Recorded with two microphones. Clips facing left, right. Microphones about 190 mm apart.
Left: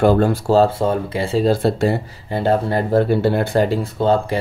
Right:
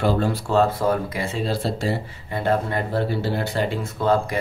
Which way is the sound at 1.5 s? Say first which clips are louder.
Left 9 dB; 55° left (ahead or behind).